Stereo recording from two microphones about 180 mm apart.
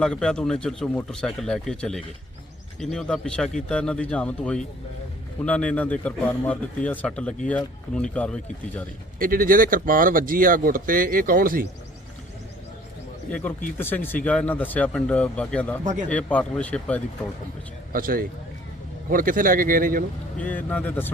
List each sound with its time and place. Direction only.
0.0 s a man's voice: 5° left (ahead or behind)
9.1 s speech: 50° right (ahead or behind)
13.7 s a man's voice: 10° left (ahead or behind)
15.8 s speech: 45° right (ahead or behind)
16.0 s a man's voice: 5° left (ahead or behind)
17.9 s speech: 50° right (ahead or behind)
20.4 s a man's voice: 10° left (ahead or behind)